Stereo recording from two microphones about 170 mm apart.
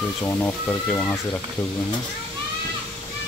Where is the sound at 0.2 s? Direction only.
15° left (ahead or behind).